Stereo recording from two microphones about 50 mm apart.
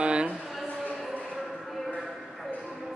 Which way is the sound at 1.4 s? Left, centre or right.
Centre.